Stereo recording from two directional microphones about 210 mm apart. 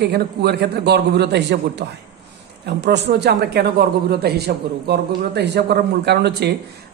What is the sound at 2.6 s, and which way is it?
A man's voice, 55° right (ahead or behind).